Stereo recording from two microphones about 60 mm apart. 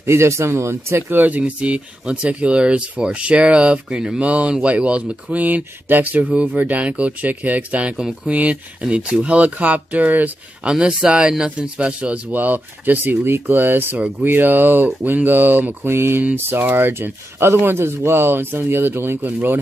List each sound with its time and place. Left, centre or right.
0.0 s speech: right
1.1 s speech: right
1.4 s speech: centre
3.9 s speech: centre
4.2 s speech: right
10.6 s speech: centre
12.3 s speech: right